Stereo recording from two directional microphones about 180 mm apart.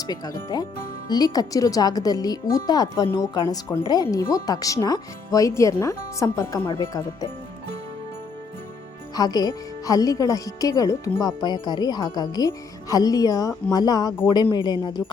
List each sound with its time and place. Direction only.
0.4 s speech: 20° left (ahead or behind)
9.1 s speech: 20° left (ahead or behind)